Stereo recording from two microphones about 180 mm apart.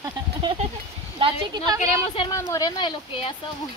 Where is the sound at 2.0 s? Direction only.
30° left (ahead or behind).